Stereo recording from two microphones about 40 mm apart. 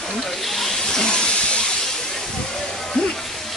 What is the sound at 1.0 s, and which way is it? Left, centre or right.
Steam, left.